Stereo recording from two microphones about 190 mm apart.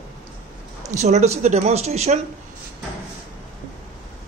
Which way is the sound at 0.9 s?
35° right (ahead or behind).